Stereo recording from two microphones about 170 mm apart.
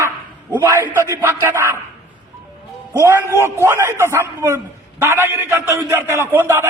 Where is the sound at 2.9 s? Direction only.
15° right (ahead or behind).